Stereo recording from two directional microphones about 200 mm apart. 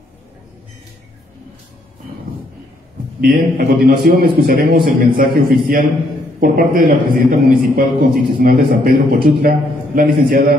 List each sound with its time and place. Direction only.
3.2 s a man's voice: 45° right (ahead or behind)
6.4 s a man's voice: 45° right (ahead or behind)